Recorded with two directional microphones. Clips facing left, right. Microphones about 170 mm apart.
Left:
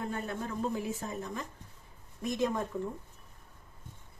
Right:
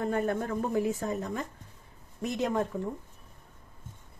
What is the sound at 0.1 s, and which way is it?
Speech, 55° right (ahead or behind).